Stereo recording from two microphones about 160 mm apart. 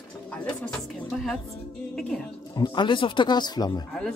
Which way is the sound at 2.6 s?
30° left (ahead or behind).